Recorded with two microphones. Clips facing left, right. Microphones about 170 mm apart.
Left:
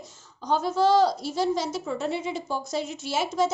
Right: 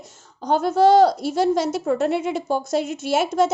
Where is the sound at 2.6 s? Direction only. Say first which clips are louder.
Right 7 dB; 50° right (ahead or behind).